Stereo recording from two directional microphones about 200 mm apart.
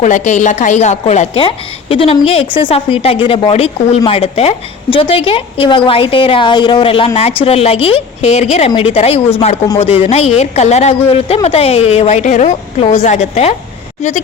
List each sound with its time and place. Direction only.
0.0 s a woman's voice: 35° left (ahead or behind)